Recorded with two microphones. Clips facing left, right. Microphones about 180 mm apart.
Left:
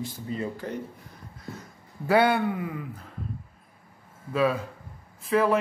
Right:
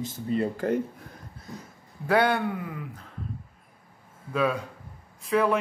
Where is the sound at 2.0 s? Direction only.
10° left (ahead or behind).